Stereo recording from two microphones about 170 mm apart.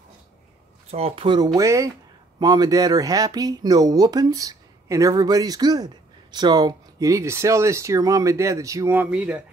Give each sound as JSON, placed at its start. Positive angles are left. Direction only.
{"t": 0.9, "sound": "speech", "side_deg": -35}